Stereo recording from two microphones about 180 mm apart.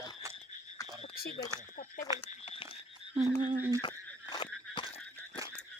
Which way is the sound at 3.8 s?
25° left (ahead or behind).